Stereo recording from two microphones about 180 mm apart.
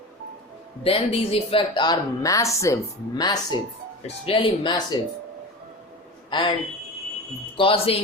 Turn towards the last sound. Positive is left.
turn(degrees=30)  # may be behind; listen again after turning